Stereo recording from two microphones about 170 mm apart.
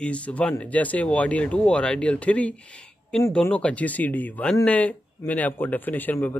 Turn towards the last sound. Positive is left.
turn(degrees=10)  # may be behind; listen again after turning